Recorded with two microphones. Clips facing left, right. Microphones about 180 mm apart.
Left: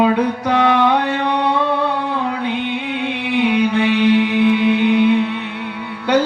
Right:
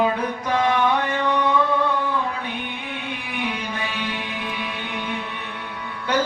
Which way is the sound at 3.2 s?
75° left (ahead or behind).